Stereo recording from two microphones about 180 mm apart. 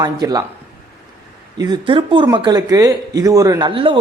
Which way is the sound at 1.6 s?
25° right (ahead or behind).